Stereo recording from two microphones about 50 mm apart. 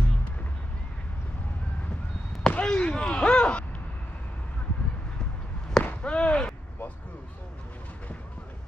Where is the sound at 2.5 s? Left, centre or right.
Left.